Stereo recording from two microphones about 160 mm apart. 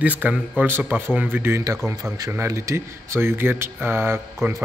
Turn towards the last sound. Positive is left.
turn(degrees=-15)  # may be behind; listen again after turning